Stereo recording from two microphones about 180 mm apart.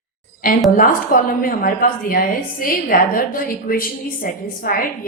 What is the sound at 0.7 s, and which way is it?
A woman's voice, 50° left (ahead or behind).